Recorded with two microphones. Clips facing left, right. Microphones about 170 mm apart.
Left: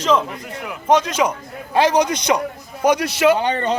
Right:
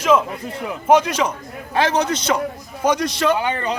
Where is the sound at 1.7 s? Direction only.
15° left (ahead or behind).